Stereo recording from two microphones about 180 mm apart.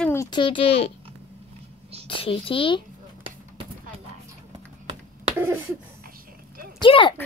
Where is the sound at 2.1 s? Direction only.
30° left (ahead or behind).